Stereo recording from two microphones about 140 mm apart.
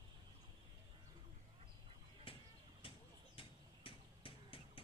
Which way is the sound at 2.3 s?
40° left (ahead or behind).